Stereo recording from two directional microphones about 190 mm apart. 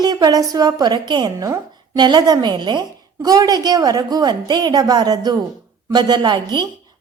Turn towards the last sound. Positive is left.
turn(degrees=-25)  # may be behind; listen again after turning